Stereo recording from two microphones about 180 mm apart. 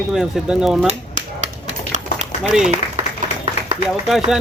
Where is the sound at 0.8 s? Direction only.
40° right (ahead or behind).